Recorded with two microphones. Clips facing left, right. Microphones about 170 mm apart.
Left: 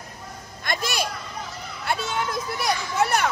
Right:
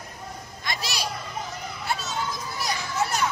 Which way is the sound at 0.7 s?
50° left (ahead or behind).